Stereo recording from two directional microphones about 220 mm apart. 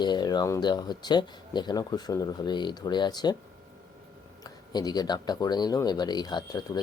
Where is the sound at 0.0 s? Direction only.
20° left (ahead or behind).